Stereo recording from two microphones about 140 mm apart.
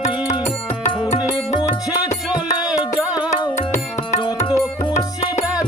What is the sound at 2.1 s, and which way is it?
Music, 30° left (ahead or behind).